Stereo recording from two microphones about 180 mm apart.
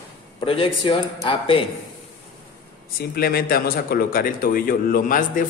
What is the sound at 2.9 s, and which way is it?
Speech, 55° left (ahead or behind).